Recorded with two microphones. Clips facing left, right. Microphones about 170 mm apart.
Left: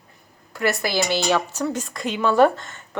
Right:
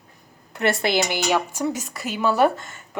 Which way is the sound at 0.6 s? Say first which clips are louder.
Right 1 dB; 25° right (ahead or behind).